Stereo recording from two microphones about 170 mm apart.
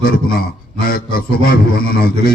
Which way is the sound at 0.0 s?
60° left (ahead or behind).